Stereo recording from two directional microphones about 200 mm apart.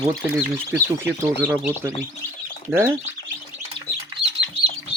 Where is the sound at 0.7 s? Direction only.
10° right (ahead or behind).